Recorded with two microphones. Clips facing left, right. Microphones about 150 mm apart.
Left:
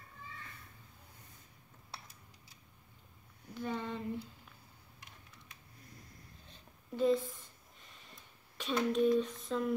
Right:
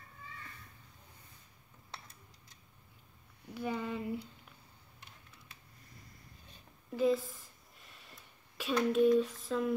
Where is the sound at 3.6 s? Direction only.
10° right (ahead or behind).